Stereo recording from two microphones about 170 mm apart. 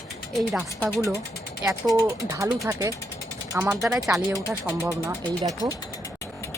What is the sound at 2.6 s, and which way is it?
A man's voice, 15° right (ahead or behind).